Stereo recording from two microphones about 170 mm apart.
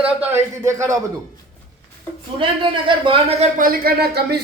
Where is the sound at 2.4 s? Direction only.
30° right (ahead or behind).